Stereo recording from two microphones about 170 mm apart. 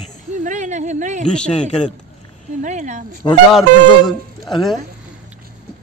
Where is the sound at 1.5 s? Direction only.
40° left (ahead or behind).